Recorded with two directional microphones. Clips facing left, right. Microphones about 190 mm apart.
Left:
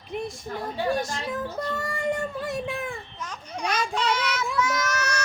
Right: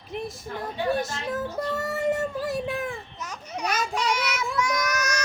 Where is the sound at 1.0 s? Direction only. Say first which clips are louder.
Right 1 dB; 5° right (ahead or behind).